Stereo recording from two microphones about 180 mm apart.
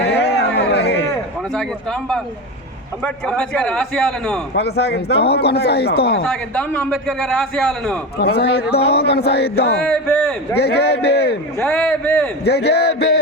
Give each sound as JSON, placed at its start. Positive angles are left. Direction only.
{"t": 0.0, "sound": "chatter", "side_deg": 65}
{"t": 1.5, "sound": "a man's voice", "side_deg": 5}
{"t": 4.5, "sound": "speech", "side_deg": 65}
{"t": 6.2, "sound": "a man's voice", "side_deg": 5}
{"t": 8.2, "sound": "speech", "side_deg": 65}
{"t": 9.8, "sound": "a man's voice", "side_deg": 5}
{"t": 10.6, "sound": "speech", "side_deg": 65}
{"t": 11.6, "sound": "a man's voice", "side_deg": 5}
{"t": 12.5, "sound": "a man's voice", "side_deg": 65}